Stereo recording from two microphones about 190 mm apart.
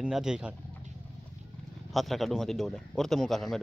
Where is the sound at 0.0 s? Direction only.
5° right (ahead or behind).